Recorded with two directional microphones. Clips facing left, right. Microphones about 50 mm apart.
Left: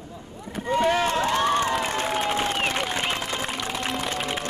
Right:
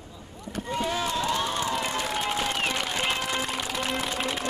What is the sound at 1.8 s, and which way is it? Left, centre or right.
Crowd, left.